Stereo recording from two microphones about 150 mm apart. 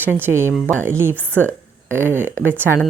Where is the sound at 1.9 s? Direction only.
15° right (ahead or behind).